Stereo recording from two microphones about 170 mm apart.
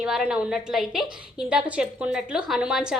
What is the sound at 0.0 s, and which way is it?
A woman's voice, 5° right (ahead or behind).